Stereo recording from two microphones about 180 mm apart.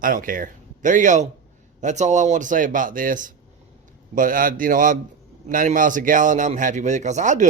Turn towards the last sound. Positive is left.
turn(degrees=-45)  # may be behind; listen again after turning